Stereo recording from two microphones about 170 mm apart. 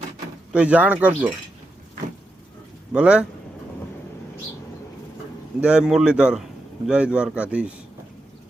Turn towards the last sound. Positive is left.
turn(degrees=-5)  # may be behind; listen again after turning